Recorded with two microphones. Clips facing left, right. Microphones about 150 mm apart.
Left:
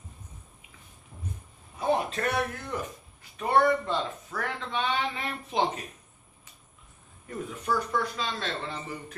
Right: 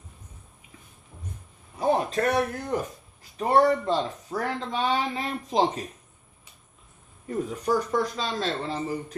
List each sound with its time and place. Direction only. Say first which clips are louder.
1.8 s a man's voice: right 4 dB; 40° right (ahead or behind)
7.3 s speech: right 5 dB; 40° right (ahead or behind)